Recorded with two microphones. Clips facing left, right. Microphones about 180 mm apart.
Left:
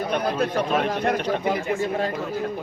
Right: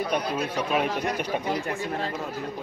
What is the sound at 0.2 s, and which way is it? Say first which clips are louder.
Speech: left 5 dB; 55° left (ahead or behind).